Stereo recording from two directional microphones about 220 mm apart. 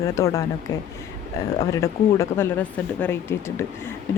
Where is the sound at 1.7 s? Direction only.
15° left (ahead or behind).